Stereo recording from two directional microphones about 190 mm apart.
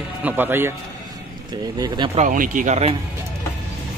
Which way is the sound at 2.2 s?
45° right (ahead or behind).